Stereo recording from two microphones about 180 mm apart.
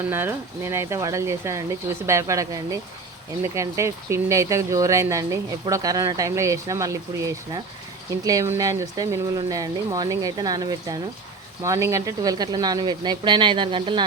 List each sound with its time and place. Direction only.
0.1 s speech: 15° right (ahead or behind); by 14.0 s 30° right (ahead or behind)